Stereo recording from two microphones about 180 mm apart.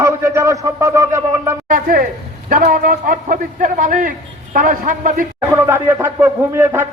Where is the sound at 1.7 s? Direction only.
50° right (ahead or behind).